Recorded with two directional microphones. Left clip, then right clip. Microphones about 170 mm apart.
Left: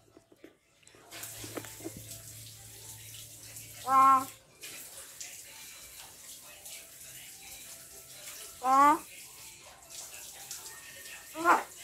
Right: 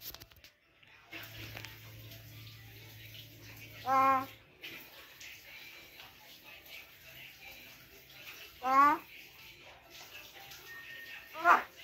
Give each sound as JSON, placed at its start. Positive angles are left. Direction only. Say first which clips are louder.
{"t": 3.8, "sound": "bathtub", "louder": "left 5 dB", "side_deg": 15}
{"t": 8.6, "sound": "a child's voice", "louder": "left 3 dB", "side_deg": 25}
{"t": 11.3, "sound": "bathtub", "louder": "even", "side_deg": 20}